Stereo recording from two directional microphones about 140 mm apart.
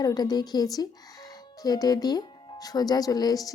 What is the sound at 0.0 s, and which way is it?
Speech, 30° left (ahead or behind).